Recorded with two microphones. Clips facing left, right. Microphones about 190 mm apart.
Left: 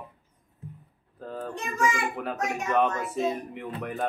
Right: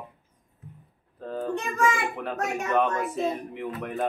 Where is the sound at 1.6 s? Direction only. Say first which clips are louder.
Right 1 dB; 60° right (ahead or behind).